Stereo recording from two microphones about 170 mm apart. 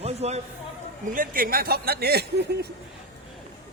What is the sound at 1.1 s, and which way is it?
Speech, 55° right (ahead or behind).